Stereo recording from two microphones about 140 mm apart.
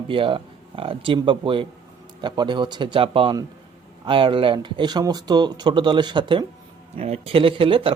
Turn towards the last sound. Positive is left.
turn(degrees=-40)  # may be behind; listen again after turning